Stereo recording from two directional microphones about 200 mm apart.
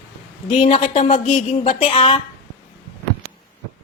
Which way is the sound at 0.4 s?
30° left (ahead or behind).